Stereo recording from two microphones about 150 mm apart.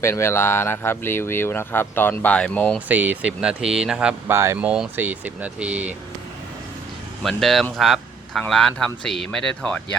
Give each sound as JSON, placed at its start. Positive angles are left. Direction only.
{"t": 0.0, "sound": "speech", "side_deg": 15}
{"t": 2.9, "sound": "speech", "side_deg": -10}
{"t": 4.3, "sound": "speech", "side_deg": -15}
{"t": 7.2, "sound": "speech", "side_deg": 0}